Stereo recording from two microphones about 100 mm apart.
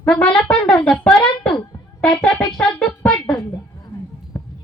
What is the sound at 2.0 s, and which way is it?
Music, 10° left (ahead or behind).